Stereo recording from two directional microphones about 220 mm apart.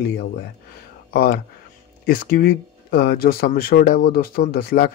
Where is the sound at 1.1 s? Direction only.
45° left (ahead or behind).